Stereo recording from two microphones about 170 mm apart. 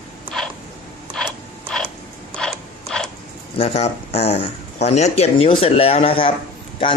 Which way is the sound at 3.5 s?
35° left (ahead or behind).